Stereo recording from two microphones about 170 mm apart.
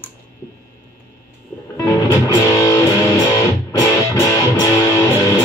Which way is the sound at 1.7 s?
15° left (ahead or behind).